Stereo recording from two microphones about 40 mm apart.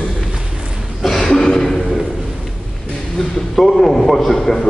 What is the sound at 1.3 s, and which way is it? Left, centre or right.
Cough, centre.